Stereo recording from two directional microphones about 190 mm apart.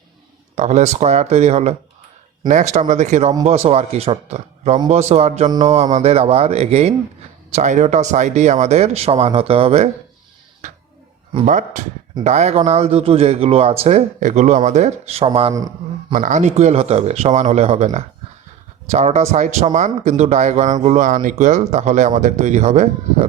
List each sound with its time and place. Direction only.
0.5 s speech: 35° right (ahead or behind)
11.4 s a man's voice: 40° right (ahead or behind); by 16.1 s 20° right (ahead or behind)
16.1 s speech: 40° right (ahead or behind)